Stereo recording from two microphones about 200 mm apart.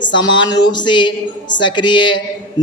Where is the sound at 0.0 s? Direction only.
20° left (ahead or behind).